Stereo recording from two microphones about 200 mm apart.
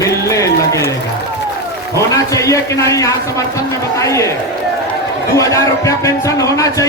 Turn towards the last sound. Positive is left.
turn(degrees=15)  # may be behind; listen again after turning